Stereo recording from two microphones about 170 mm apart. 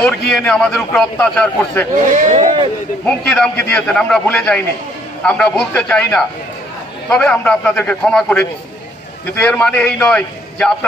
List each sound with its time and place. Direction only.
0.3 s a man's voice: 5° left (ahead or behind)
2.1 s speech: 45° right (ahead or behind)
3.1 s a man's voice: 5° left (ahead or behind)